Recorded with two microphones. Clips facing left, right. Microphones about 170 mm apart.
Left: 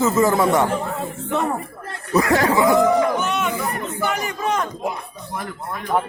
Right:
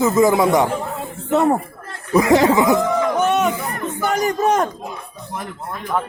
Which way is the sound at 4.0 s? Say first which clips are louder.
Right 7 dB; 40° right (ahead or behind).